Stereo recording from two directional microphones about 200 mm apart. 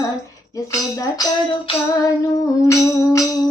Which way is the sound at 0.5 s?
20° left (ahead or behind).